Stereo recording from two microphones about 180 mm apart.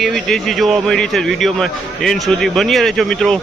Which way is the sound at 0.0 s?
Centre (ahead or behind).